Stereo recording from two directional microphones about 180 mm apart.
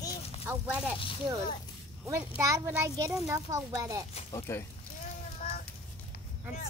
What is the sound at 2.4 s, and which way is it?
A child's voice, 15° right (ahead or behind).